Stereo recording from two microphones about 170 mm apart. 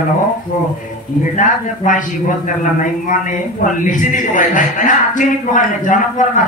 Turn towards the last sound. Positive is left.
turn(degrees=50)  # may be behind; listen again after turning